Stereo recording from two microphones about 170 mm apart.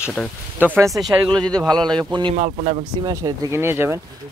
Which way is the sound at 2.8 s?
20° right (ahead or behind).